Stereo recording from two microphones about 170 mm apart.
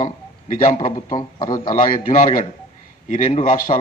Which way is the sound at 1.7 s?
50° left (ahead or behind).